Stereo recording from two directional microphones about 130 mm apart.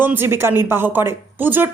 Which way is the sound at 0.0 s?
15° right (ahead or behind).